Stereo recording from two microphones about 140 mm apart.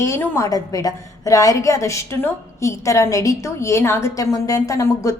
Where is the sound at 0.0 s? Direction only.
20° left (ahead or behind).